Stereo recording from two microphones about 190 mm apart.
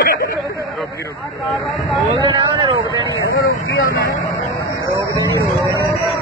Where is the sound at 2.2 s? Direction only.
25° right (ahead or behind).